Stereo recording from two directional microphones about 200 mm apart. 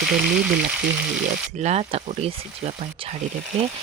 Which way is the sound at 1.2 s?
35° right (ahead or behind).